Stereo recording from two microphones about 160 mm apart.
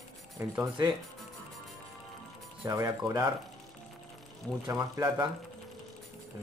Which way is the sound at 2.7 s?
25° right (ahead or behind).